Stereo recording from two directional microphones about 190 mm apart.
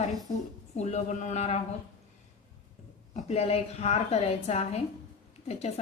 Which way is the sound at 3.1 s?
35° left (ahead or behind).